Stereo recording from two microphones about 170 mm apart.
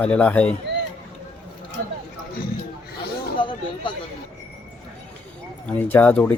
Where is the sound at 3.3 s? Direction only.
30° left (ahead or behind).